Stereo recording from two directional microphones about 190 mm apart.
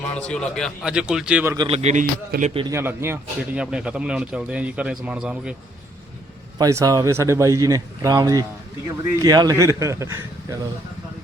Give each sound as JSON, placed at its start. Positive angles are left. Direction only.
{"t": 0.1, "sound": "speech", "side_deg": 5}
{"t": 1.5, "sound": "a man's voice", "side_deg": -30}
{"t": 2.7, "sound": "speech", "side_deg": -15}
{"t": 6.6, "sound": "speech", "side_deg": -15}